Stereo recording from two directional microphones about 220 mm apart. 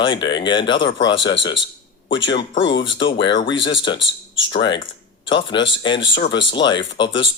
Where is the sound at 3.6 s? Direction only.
55° left (ahead or behind).